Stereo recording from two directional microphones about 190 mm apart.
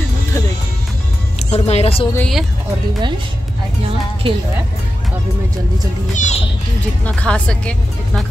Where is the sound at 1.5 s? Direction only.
35° left (ahead or behind).